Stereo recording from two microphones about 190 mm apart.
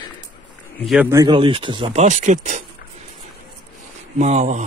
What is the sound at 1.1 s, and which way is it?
Speech, 20° right (ahead or behind).